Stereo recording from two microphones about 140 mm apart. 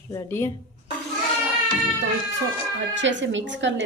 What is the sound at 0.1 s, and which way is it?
Speech, 20° left (ahead or behind).